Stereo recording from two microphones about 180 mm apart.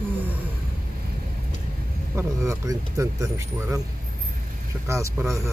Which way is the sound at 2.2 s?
15° right (ahead or behind).